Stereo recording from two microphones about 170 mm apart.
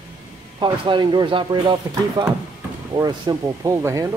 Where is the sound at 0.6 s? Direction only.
25° right (ahead or behind).